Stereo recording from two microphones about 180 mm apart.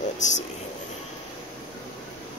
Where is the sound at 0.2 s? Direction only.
40° left (ahead or behind).